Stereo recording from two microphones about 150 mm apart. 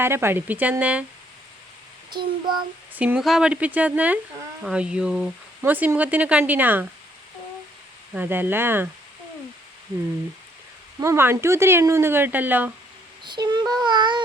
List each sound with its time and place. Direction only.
0.0 s speech: 15° right (ahead or behind)
2.0 s a child's voice: 30° right (ahead or behind)
2.9 s speech: 10° right (ahead or behind)
8.1 s speech: 15° right (ahead or behind)
11.0 s speech: 15° right (ahead or behind)
13.2 s a child's voice: 30° right (ahead or behind)